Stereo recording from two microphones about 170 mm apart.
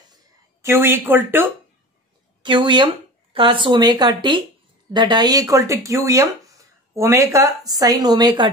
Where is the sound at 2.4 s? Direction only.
25° right (ahead or behind).